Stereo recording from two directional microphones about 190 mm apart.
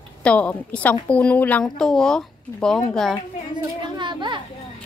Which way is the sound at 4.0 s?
25° right (ahead or behind).